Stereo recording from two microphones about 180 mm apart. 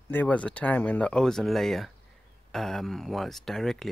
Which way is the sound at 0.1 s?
10° left (ahead or behind).